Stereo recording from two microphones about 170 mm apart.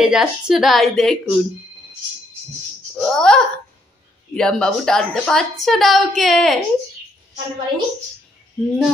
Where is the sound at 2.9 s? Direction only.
5° left (ahead or behind).